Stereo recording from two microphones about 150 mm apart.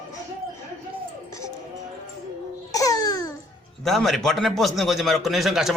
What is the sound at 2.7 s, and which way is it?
Babbling, 25° left (ahead or behind).